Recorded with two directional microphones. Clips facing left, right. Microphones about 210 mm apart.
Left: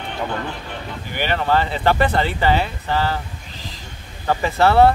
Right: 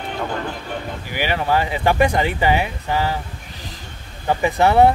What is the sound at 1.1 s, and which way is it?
Speech, 10° right (ahead or behind).